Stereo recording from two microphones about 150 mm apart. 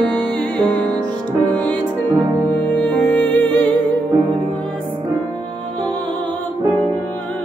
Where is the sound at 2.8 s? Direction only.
10° left (ahead or behind).